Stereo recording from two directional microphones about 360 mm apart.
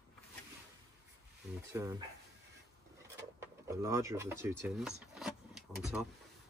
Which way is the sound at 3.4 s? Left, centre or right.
Centre.